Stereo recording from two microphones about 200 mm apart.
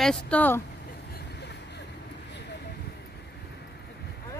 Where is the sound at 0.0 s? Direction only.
5° left (ahead or behind).